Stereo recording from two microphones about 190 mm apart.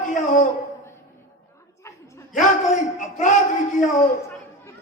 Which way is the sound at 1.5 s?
15° left (ahead or behind).